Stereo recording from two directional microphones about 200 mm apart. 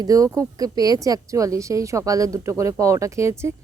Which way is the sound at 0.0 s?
15° right (ahead or behind).